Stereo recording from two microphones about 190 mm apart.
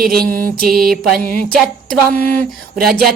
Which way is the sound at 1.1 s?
45° right (ahead or behind).